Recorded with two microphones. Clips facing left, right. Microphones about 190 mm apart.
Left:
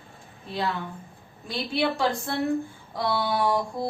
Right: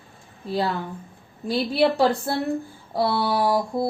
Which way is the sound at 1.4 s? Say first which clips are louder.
Right 6 dB; 35° right (ahead or behind).